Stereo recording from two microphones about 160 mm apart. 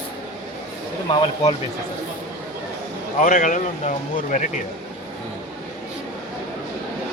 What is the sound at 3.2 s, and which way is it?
Speech, 55° left (ahead or behind).